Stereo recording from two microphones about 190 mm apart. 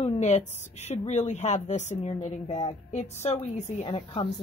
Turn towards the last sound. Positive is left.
turn(degrees=30)  # may be behind; listen again after turning